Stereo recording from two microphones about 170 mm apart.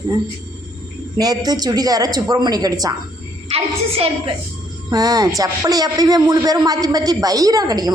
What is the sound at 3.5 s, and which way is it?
Speech, 35° right (ahead or behind).